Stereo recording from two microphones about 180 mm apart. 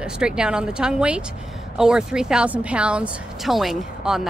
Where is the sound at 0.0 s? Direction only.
5° right (ahead or behind).